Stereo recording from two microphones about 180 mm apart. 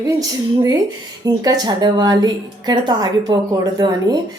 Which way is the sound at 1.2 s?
20° right (ahead or behind).